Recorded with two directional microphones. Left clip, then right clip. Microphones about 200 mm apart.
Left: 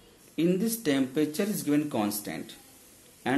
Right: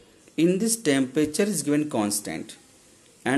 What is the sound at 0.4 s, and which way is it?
Speech, 30° right (ahead or behind).